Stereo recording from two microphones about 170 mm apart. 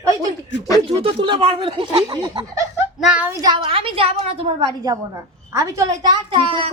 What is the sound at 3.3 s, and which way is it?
A woman's voice, 25° right (ahead or behind).